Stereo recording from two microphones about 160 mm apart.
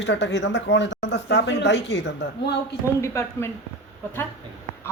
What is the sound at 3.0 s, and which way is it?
Speech, 15° left (ahead or behind).